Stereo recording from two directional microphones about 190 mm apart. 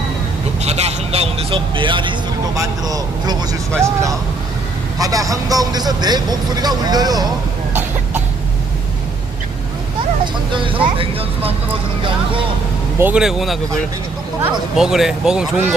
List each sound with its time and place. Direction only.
0.6 s vehicle: 35° right (ahead or behind)
2.6 s speech: 20° right (ahead or behind)
7.7 s cough: 10° right (ahead or behind)
10.5 s speech: 25° right (ahead or behind)
13.0 s speech: 5° right (ahead or behind)
14.8 s speech: centre (ahead or behind)